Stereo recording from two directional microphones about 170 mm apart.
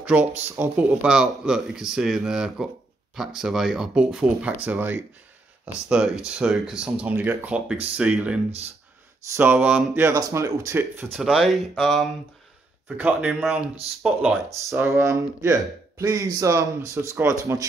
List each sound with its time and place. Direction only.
0.0 s a man's voice: 10° right (ahead or behind)
9.4 s a man's voice: 10° right (ahead or behind)
14.7 s speech: 15° right (ahead or behind)